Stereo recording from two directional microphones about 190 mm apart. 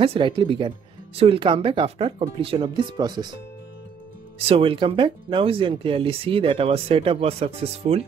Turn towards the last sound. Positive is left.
turn(degrees=-30)  # may be behind; listen again after turning